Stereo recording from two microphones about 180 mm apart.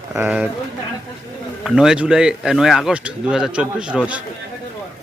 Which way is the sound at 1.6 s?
5° right (ahead or behind).